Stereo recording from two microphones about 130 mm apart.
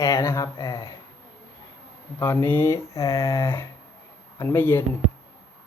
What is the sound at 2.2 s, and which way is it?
Speech, 20° left (ahead or behind).